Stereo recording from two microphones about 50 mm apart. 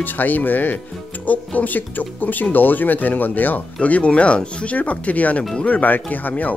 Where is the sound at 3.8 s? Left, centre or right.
Left.